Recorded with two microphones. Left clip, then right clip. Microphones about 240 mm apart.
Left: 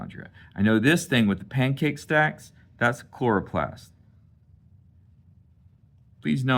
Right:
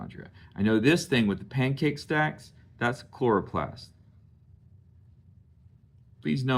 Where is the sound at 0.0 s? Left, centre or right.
Left.